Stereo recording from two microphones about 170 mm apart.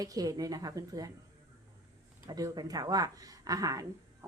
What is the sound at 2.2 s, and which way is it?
A woman's voice, 20° right (ahead or behind).